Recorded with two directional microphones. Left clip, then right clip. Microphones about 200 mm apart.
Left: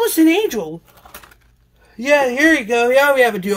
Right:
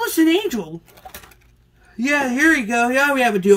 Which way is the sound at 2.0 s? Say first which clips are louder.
Left 4 dB; 25° left (ahead or behind).